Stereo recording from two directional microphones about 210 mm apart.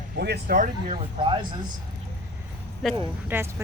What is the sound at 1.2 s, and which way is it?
Speech, 25° right (ahead or behind).